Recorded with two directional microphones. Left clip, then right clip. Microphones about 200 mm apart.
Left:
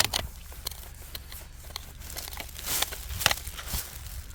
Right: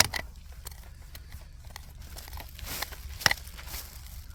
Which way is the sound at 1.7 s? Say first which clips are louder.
Left 7 dB; 15° left (ahead or behind).